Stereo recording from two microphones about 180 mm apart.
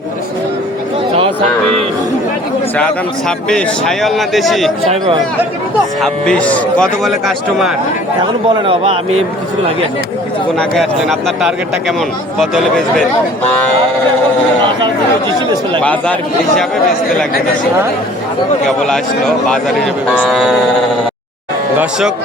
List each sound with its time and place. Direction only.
2.7 s speech: 5° left (ahead or behind)
6.0 s speech: 5° left (ahead or behind)
8.4 s speech: 30° right (ahead or behind)
10.6 s speech: centre (ahead or behind)
15.8 s speech: 5° left (ahead or behind)
18.6 s speech: 5° left (ahead or behind)